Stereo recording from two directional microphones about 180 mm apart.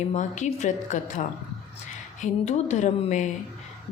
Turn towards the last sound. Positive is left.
turn(degrees=40)  # may be behind; listen again after turning